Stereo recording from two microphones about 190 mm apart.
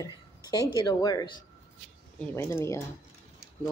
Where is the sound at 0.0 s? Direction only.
20° left (ahead or behind).